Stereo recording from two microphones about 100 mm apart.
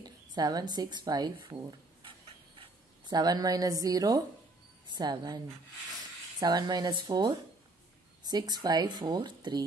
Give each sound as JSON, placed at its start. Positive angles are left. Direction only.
{"t": 0.0, "sound": "a woman's voice", "side_deg": -45}
{"t": 2.0, "sound": "a sound", "side_deg": -60}
{"t": 3.1, "sound": "a woman's voice", "side_deg": -40}